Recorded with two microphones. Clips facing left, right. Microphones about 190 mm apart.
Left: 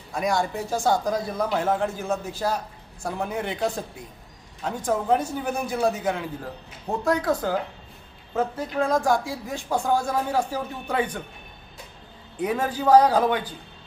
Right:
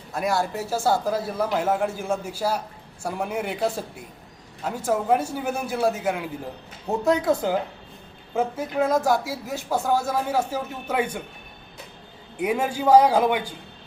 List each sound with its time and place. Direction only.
0.1 s speech: 5° right (ahead or behind)
7.0 s speech: 25° right (ahead or behind)
8.3 s speech: 10° right (ahead or behind)
12.4 s speech: 10° right (ahead or behind)